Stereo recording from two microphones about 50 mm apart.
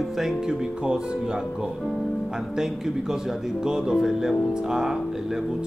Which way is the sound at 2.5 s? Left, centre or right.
Centre.